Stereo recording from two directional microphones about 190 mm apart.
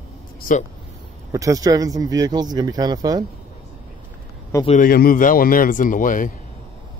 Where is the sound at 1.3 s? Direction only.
15° right (ahead or behind).